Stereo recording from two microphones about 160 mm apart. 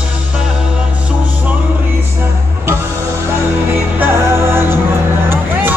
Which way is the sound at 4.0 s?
15° right (ahead or behind).